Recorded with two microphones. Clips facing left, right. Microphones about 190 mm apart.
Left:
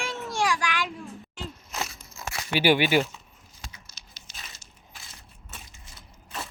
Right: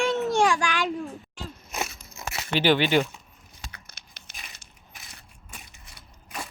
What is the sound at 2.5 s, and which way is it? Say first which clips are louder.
Speech: even; 10° left (ahead or behind).